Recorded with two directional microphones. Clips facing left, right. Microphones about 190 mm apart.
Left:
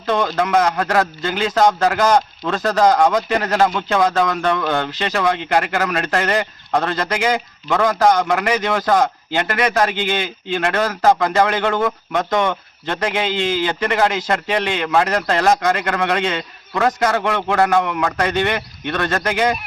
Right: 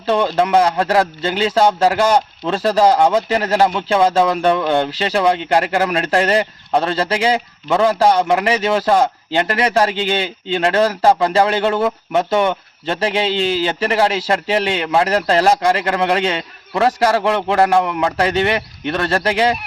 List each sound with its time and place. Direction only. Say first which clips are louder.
0.0 s speech: right 3 dB; 30° right (ahead or behind)